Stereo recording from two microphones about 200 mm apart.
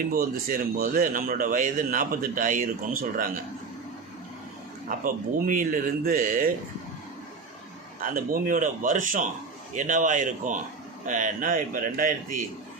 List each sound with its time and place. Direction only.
0.0 s speech: 45° right (ahead or behind)
4.9 s speech: 40° right (ahead or behind)
8.0 s speech: 45° right (ahead or behind)